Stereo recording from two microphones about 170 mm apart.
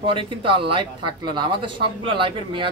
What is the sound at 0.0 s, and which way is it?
Speech, 30° right (ahead or behind).